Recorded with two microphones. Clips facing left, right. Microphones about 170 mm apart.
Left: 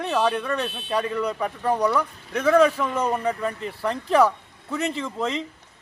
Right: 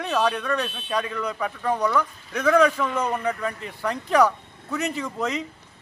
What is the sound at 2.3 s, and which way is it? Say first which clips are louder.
Speech: left 1 dB; 30° left (ahead or behind).